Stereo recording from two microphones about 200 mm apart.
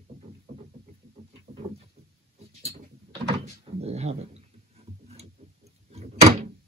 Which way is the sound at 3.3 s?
30° right (ahead or behind).